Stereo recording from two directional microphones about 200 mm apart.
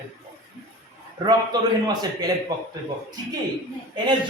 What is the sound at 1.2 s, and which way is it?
A man's voice, 20° right (ahead or behind).